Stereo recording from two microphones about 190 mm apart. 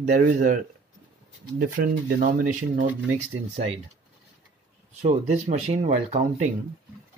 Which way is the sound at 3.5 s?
35° right (ahead or behind).